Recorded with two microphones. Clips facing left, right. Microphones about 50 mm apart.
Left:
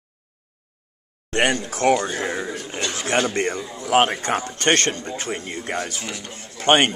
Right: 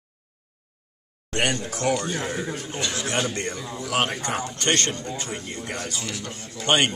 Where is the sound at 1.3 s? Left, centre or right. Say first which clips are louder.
Left 4 dB; left.